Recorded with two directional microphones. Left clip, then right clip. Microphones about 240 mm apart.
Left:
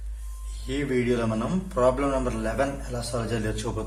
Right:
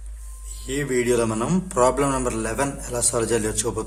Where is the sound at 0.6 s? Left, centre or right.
Right.